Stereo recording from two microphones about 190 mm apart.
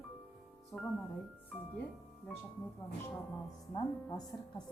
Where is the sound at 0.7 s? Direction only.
10° left (ahead or behind).